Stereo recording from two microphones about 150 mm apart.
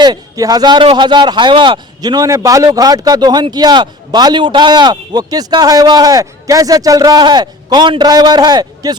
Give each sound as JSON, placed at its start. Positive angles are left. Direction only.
{"t": 0.0, "sound": "speech", "side_deg": -25}